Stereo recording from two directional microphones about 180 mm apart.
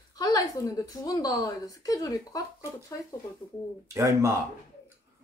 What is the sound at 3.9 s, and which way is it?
Speech, 15° right (ahead or behind).